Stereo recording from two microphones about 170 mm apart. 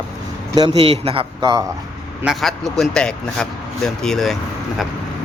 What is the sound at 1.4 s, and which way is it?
Speech, 20° right (ahead or behind).